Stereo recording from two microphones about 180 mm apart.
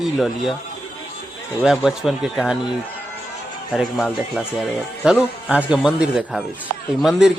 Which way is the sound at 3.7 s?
5° right (ahead or behind).